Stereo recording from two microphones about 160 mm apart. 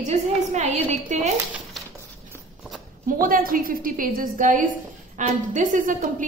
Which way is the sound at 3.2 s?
60° right (ahead or behind).